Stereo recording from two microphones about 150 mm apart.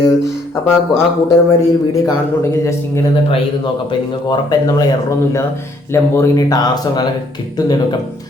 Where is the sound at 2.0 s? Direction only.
20° left (ahead or behind).